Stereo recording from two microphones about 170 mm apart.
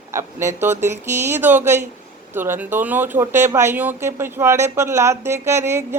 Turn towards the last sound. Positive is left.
turn(degrees=-15)  # may be behind; listen again after turning